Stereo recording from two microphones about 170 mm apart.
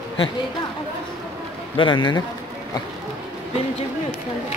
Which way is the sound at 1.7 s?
30° left (ahead or behind).